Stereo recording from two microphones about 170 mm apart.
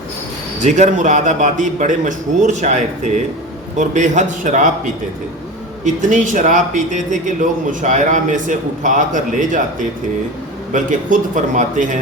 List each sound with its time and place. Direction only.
0.6 s speech: 45° right (ahead or behind)
5.8 s speech: 45° right (ahead or behind)
10.7 s speech: 50° right (ahead or behind)